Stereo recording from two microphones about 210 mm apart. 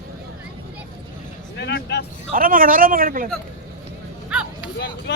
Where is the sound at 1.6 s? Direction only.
55° left (ahead or behind).